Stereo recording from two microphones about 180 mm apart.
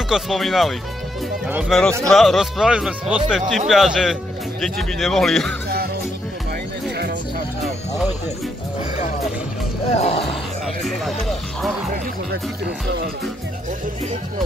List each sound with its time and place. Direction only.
0.1 s speech: centre (ahead or behind)
9.9 s speech: 35° left (ahead or behind)
10.8 s speech: centre (ahead or behind)